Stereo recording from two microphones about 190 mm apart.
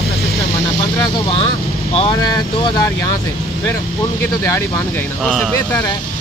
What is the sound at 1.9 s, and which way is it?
Speech, 35° left (ahead or behind).